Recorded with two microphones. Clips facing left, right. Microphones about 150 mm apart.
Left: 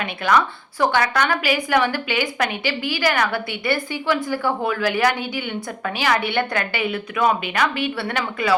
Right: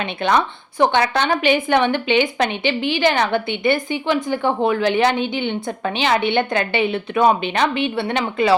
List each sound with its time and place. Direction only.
0.0 s a woman's voice: 25° right (ahead or behind)